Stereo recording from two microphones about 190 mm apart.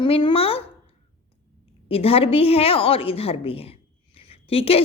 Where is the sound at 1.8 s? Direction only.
30° left (ahead or behind).